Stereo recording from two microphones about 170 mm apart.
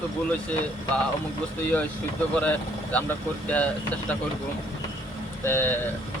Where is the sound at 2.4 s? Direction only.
10° left (ahead or behind).